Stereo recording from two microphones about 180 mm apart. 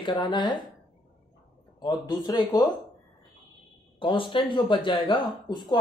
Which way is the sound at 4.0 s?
25° left (ahead or behind).